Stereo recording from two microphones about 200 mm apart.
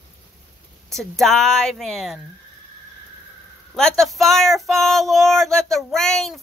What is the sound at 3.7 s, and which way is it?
Female singing, centre (ahead or behind).